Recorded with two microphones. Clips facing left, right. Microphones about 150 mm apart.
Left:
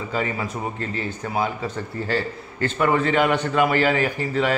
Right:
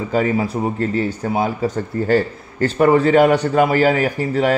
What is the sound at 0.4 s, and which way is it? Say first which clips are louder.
A man's voice: right 8 dB; 35° right (ahead or behind).